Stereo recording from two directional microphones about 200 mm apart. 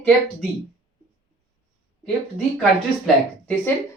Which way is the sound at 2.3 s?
Centre (ahead or behind).